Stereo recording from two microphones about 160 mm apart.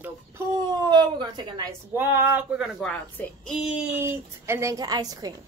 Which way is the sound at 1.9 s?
15° right (ahead or behind).